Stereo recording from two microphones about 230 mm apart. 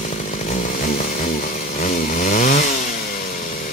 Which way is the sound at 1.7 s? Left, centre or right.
Left.